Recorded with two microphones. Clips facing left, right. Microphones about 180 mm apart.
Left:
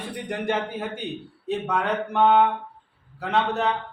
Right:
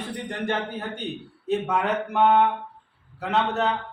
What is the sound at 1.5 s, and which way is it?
Speech, 5° right (ahead or behind).